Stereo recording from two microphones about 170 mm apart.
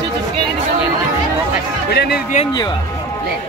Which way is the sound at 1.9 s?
75° left (ahead or behind).